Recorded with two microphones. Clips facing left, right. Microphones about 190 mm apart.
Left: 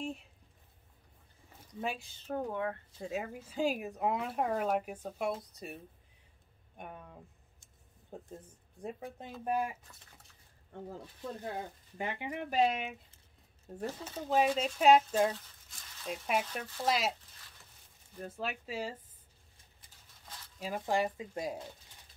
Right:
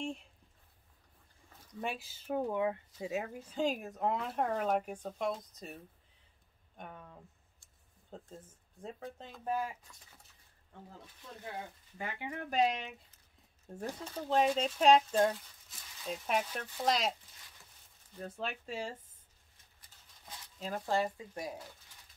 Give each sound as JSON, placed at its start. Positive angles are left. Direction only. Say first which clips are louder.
{"t": 0.0, "sound": "speech", "louder": "even", "side_deg": 5}
{"t": 1.8, "sound": "speech", "louder": "left 1 dB", "side_deg": 0}
{"t": 3.0, "sound": "speech", "louder": "left 2 dB", "side_deg": 0}
{"t": 6.8, "sound": "speech", "louder": "left 2 dB", "side_deg": 10}
{"t": 7.6, "sound": "a sound", "louder": "left 4 dB", "side_deg": 20}
{"t": 8.8, "sound": "speech", "louder": "left 3 dB", "side_deg": 10}
{"t": 12.0, "sound": "speech", "louder": "left 3 dB", "side_deg": 20}
{"t": 12.4, "sound": "speech", "louder": "left 1 dB", "side_deg": 5}
{"t": 18.1, "sound": "speech", "louder": "left 1 dB", "side_deg": 5}
{"t": 20.5, "sound": "speech", "louder": "left 1 dB", "side_deg": 10}